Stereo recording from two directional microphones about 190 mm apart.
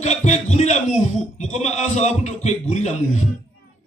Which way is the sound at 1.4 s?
35° left (ahead or behind).